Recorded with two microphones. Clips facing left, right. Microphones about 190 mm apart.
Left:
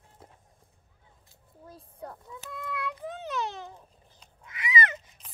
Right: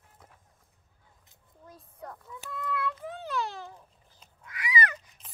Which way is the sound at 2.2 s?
20° left (ahead or behind).